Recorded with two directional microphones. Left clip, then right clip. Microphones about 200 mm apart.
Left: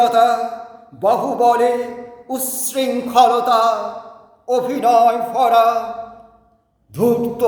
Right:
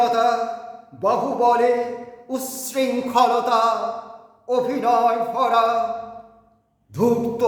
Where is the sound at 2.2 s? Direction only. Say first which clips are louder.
Left 4 dB; centre (ahead or behind).